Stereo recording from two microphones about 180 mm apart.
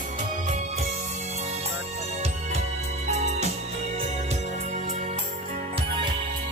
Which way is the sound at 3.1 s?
35° right (ahead or behind).